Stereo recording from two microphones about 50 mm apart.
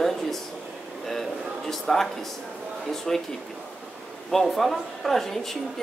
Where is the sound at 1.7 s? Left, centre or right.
Centre.